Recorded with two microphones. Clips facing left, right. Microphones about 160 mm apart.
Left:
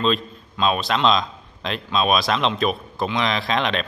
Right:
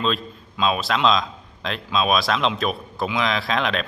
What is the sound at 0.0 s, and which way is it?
Speech, centre (ahead or behind).